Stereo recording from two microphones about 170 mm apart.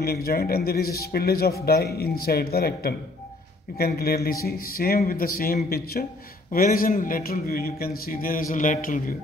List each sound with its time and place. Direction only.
0.0 s speech: 65° left (ahead or behind)